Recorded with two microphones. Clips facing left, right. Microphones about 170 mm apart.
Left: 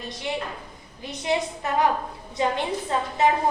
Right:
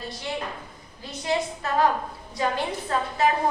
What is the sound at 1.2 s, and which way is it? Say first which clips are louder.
A woman's voice: left 1 dB; 20° left (ahead or behind).